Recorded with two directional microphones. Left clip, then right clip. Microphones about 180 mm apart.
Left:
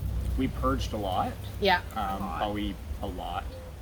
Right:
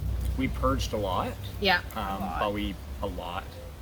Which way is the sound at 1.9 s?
25° right (ahead or behind).